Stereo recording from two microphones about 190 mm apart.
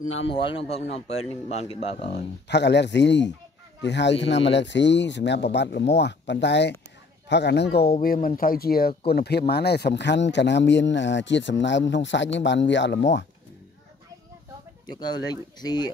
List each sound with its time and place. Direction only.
0.3 s speech: 25° left (ahead or behind)
2.4 s speech: 65° left (ahead or behind)
14.9 s speech: 20° left (ahead or behind)